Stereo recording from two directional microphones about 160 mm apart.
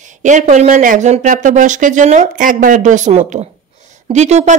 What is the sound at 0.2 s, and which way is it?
Speech, 50° right (ahead or behind).